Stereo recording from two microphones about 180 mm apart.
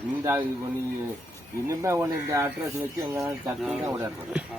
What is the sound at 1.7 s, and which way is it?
Speech, 15° right (ahead or behind).